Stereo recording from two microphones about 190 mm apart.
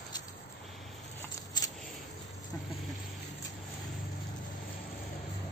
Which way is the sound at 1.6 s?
20° left (ahead or behind).